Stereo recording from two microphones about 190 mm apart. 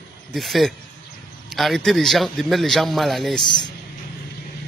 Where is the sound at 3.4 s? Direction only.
25° left (ahead or behind).